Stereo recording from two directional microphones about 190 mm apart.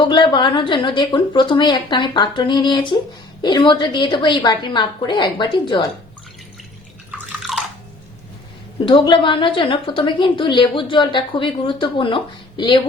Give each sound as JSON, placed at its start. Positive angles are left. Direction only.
{"t": 0.1, "sound": "a woman's voice", "side_deg": 25}
{"t": 7.5, "sound": "chewing", "side_deg": 0}
{"t": 8.8, "sound": "a woman's voice", "side_deg": 25}